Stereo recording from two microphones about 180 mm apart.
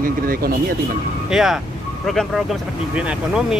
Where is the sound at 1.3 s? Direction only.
Centre (ahead or behind).